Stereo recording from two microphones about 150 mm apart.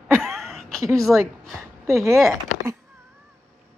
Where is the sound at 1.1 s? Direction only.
Centre (ahead or behind).